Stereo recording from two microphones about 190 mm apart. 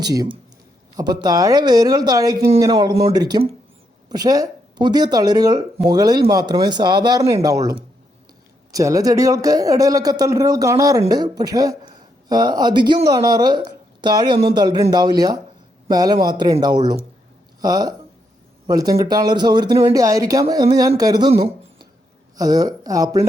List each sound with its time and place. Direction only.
0.0 s a man's voice: 20° right (ahead or behind)